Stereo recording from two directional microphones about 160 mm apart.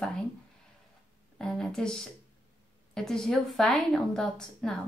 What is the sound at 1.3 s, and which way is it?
A woman's voice, 5° left (ahead or behind).